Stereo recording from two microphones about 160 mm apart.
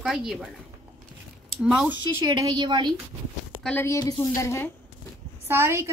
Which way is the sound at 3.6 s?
10° left (ahead or behind).